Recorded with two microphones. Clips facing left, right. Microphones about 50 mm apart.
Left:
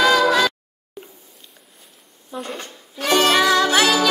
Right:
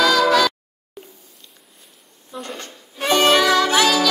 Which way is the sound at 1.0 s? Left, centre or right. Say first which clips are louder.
Left 1 dB; centre.